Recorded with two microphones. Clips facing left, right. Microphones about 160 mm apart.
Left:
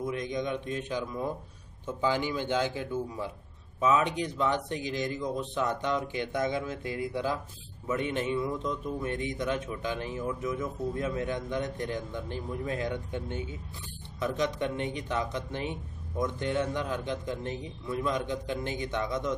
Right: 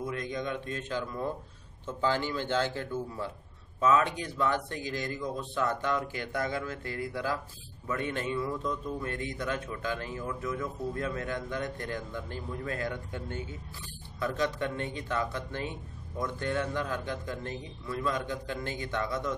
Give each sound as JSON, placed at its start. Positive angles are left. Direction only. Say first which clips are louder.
{"t": 0.0, "sound": "a man's voice", "louder": "left 2 dB", "side_deg": 20}